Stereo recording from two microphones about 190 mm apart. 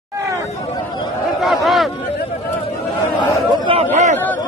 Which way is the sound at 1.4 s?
Centre (ahead or behind).